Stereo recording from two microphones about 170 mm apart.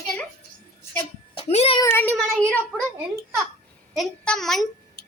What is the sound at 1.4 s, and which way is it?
Speech, 35° left (ahead or behind).